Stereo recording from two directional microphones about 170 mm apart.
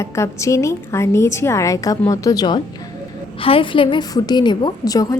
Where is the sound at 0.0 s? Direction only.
15° left (ahead or behind).